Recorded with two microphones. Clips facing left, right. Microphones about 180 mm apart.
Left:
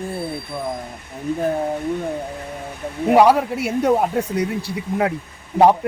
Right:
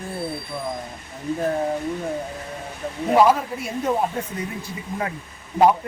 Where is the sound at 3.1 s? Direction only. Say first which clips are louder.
Left 3 dB; 70° left (ahead or behind).